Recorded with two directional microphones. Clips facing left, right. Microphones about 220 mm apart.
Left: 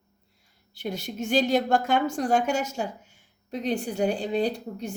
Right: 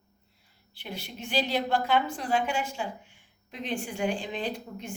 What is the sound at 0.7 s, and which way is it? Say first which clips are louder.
A woman's voice: left 8 dB; 45° left (ahead or behind).